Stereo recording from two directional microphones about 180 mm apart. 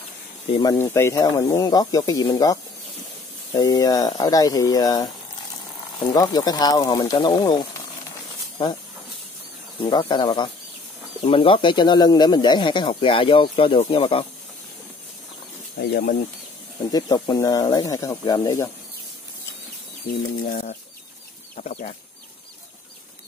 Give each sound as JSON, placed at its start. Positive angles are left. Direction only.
{"t": 0.5, "sound": "speech", "side_deg": 25}
{"t": 9.8, "sound": "speech", "side_deg": 25}
{"t": 15.9, "sound": "speech", "side_deg": 60}
{"t": 16.9, "sound": "speech", "side_deg": 20}
{"t": 20.1, "sound": "speech", "side_deg": 55}
{"t": 21.5, "sound": "speech", "side_deg": 40}